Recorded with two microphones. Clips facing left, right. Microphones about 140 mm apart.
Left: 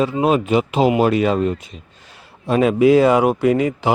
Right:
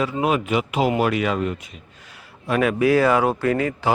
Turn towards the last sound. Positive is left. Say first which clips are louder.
# left 4 dB
turn(degrees=20)  # may be behind; listen again after turning